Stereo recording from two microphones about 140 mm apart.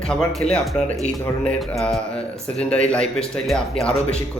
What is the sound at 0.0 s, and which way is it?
A man's voice, 5° left (ahead or behind).